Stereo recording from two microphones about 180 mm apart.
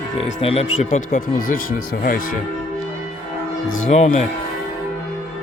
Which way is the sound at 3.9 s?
40° left (ahead or behind).